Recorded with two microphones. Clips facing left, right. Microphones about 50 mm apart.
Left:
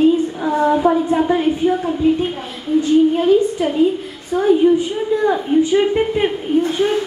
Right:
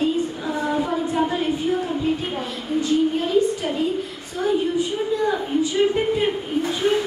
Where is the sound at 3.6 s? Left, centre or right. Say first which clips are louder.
Left 7 dB; left.